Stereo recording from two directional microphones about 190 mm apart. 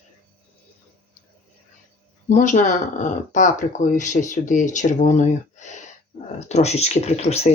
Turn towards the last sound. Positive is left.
turn(degrees=35)  # may be behind; listen again after turning